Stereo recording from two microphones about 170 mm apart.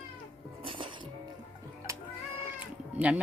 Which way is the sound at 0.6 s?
30° right (ahead or behind).